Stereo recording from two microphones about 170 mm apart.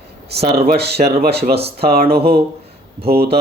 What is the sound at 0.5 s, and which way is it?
Speech, 65° right (ahead or behind).